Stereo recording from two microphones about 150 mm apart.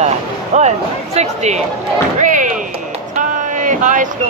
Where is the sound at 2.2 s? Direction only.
60° right (ahead or behind).